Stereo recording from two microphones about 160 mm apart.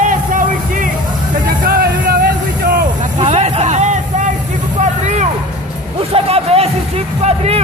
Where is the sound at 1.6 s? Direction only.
70° right (ahead or behind).